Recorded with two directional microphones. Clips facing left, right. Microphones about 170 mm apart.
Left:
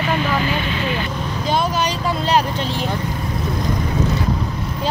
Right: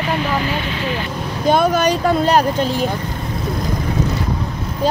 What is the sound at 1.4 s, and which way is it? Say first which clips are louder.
Speech: right 6 dB; 55° right (ahead or behind).